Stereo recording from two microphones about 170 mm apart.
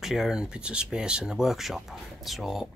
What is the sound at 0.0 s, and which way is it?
Speech, centre (ahead or behind).